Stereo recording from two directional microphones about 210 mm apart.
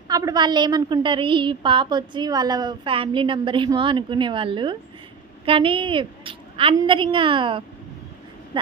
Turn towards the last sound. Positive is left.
turn(degrees=-25)  # may be behind; listen again after turning